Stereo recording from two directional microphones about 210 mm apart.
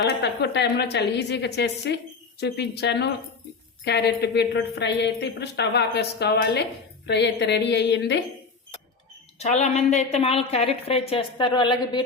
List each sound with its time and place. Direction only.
0.0 s a woman's voice: 55° left (ahead or behind)
9.4 s a woman's voice: 35° left (ahead or behind)